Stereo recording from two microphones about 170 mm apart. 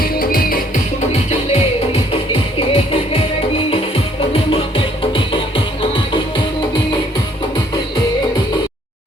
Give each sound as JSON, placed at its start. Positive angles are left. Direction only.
{"t": 0.0, "sound": "music", "side_deg": 60}
{"t": 2.6, "sound": "music", "side_deg": 35}
{"t": 5.1, "sound": "music", "side_deg": 30}